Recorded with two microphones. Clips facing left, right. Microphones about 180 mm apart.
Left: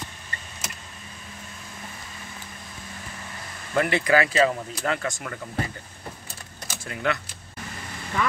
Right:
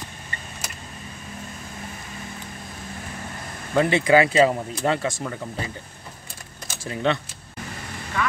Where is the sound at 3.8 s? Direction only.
20° right (ahead or behind).